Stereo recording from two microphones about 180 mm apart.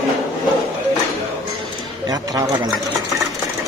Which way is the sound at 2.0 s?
20° right (ahead or behind).